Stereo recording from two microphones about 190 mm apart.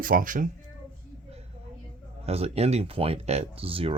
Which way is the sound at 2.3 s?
30° right (ahead or behind).